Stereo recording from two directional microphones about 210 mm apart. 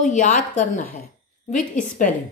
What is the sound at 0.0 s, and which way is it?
Speech, 35° left (ahead or behind).